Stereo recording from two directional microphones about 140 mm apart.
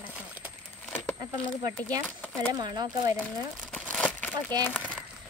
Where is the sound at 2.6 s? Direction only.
30° right (ahead or behind).